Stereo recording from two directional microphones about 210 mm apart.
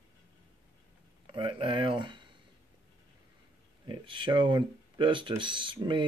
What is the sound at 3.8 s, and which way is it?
Speech, 20° right (ahead or behind).